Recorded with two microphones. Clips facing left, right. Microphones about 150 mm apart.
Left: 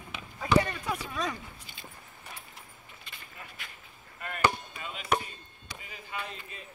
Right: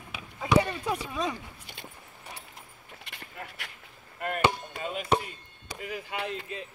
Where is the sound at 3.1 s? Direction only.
70° right (ahead or behind).